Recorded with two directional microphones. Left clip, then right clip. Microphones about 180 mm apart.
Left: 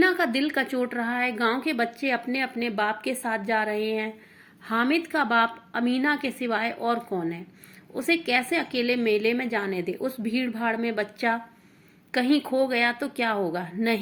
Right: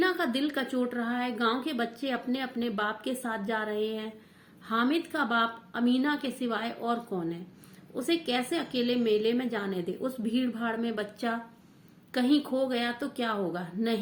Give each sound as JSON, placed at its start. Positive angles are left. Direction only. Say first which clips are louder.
{"t": 0.0, "sound": "a woman's voice", "louder": "left 5 dB", "side_deg": 20}
{"t": 10.8, "sound": "a woman's voice", "louder": "left 7 dB", "side_deg": 20}